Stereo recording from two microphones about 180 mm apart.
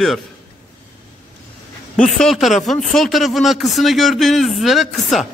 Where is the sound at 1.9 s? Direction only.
5° left (ahead or behind).